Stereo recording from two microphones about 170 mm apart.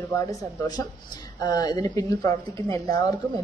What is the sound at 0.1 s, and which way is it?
Speech, 20° left (ahead or behind).